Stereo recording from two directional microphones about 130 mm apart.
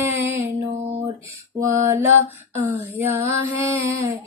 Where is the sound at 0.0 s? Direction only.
20° right (ahead or behind).